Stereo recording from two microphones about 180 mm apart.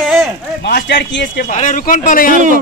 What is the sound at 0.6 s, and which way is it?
Speech, 75° left (ahead or behind).